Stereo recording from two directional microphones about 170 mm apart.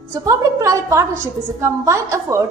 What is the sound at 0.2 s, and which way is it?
A woman's voice, 20° right (ahead or behind).